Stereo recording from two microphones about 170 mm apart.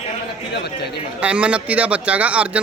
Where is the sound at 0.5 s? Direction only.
75° left (ahead or behind).